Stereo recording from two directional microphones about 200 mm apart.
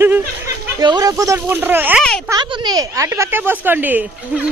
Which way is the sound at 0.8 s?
20° right (ahead or behind).